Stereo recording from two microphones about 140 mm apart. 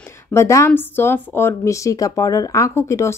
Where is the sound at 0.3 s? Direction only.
20° left (ahead or behind).